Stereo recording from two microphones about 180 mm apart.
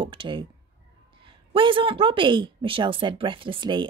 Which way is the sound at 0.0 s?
30° right (ahead or behind).